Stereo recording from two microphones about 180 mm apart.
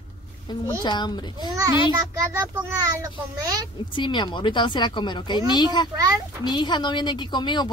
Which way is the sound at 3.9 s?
25° left (ahead or behind).